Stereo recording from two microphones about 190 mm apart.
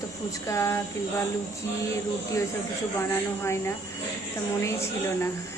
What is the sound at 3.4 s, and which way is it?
A woman's voice, 15° left (ahead or behind).